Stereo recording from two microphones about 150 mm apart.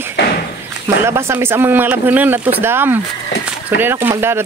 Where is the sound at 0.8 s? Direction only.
20° right (ahead or behind).